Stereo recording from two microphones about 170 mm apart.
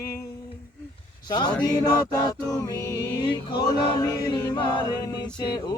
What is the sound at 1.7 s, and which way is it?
Choir, 20° left (ahead or behind).